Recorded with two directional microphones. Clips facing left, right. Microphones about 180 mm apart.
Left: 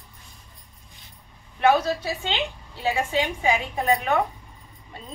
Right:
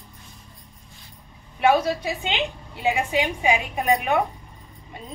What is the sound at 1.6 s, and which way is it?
A woman's voice, 10° right (ahead or behind).